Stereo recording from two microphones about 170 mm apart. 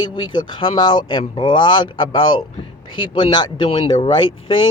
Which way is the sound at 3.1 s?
30° left (ahead or behind).